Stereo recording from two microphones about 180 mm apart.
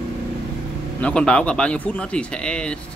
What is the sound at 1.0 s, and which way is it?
A man's voice, 5° left (ahead or behind).